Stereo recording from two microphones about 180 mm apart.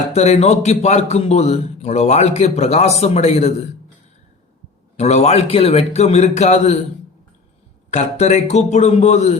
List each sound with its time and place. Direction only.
0.1 s a man's voice: 35° left (ahead or behind)
4.9 s a man's voice: 40° left (ahead or behind)
7.9 s a man's voice: 40° left (ahead or behind)